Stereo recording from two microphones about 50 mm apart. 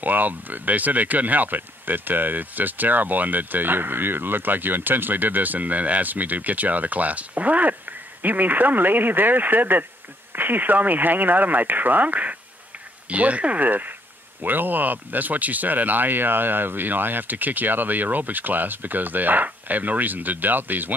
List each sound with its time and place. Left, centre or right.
0.0 s speech: right